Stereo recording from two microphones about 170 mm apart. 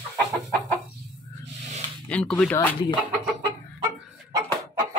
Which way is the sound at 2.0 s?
10° left (ahead or behind).